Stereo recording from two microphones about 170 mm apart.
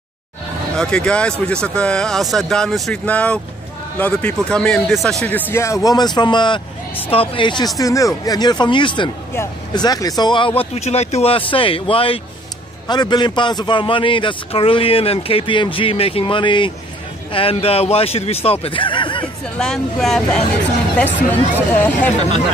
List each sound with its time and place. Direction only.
0.7 s a man's voice: 5° left (ahead or behind); by 19.2 s 30° left (ahead or behind)
19.6 s speech: centre (ahead or behind)